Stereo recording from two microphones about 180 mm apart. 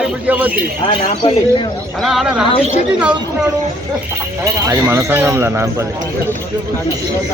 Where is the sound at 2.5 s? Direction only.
40° left (ahead or behind).